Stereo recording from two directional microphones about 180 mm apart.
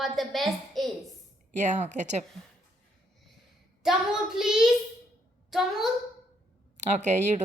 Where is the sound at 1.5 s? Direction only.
40° right (ahead or behind).